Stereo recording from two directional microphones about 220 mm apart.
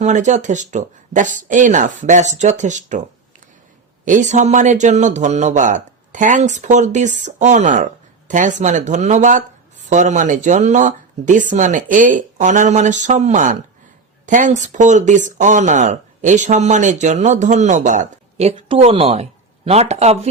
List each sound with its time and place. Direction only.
0.0 s speech: 35° right (ahead or behind)
4.0 s speech: 35° right (ahead or behind)